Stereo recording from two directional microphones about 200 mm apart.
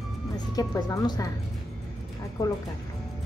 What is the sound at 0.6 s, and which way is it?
Speech, 20° left (ahead or behind).